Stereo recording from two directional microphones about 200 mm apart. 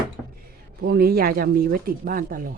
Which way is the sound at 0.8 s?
50° right (ahead or behind).